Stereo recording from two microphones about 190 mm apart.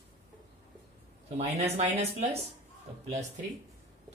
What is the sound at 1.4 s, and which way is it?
Speech, 35° right (ahead or behind).